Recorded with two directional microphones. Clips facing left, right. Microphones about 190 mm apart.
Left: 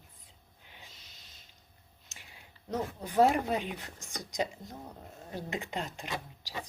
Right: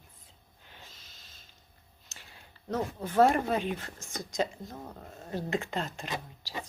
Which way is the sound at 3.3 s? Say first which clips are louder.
Right 2 dB; 15° left (ahead or behind).